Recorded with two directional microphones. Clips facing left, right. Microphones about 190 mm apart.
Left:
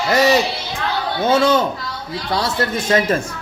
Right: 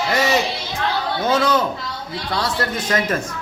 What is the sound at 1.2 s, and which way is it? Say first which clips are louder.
A man's voice: left 4 dB; 25° left (ahead or behind).